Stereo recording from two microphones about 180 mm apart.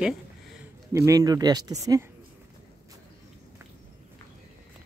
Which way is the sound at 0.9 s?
20° right (ahead or behind).